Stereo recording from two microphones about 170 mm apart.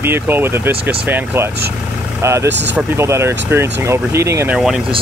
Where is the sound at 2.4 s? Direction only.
90° right.